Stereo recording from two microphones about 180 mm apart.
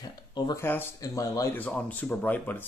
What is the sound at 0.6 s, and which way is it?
Speech, 10° left (ahead or behind).